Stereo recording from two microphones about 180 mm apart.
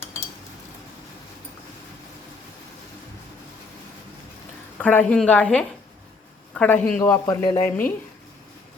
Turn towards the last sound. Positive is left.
turn(degrees=10)  # may be behind; listen again after turning